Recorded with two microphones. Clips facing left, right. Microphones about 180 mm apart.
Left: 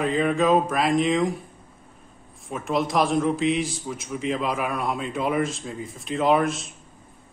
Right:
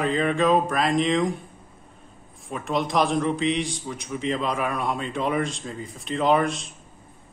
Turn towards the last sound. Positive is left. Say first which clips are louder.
# even
turn(degrees=0)  # may be behind; listen again after turning